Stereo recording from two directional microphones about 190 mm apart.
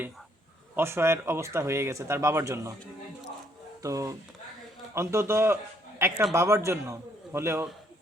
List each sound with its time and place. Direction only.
0.8 s speech: 15° right (ahead or behind)
3.8 s a man's voice: 15° right (ahead or behind)